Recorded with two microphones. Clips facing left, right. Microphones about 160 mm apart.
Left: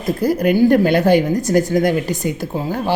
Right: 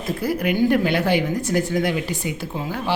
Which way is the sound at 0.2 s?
40° left (ahead or behind).